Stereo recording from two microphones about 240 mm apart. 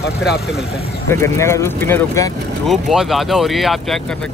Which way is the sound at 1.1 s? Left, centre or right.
Centre.